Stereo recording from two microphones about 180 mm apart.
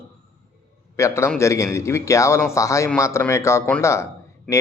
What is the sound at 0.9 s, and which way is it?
Speech, 15° left (ahead or behind).